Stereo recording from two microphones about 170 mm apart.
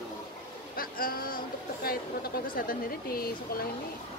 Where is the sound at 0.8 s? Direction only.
60° left (ahead or behind).